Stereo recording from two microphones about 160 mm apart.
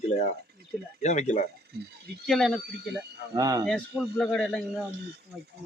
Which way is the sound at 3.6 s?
5° left (ahead or behind).